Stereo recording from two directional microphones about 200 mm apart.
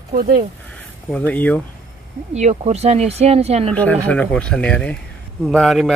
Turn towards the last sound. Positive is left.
turn(degrees=0)  # may be behind; listen again after turning